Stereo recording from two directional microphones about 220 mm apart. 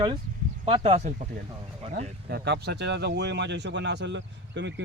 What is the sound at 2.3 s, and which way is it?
Speech, 45° right (ahead or behind).